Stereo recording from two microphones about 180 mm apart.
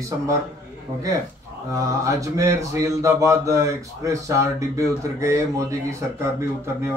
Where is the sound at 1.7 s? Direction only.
15° right (ahead or behind).